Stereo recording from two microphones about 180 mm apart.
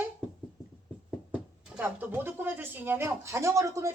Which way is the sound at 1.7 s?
10° right (ahead or behind).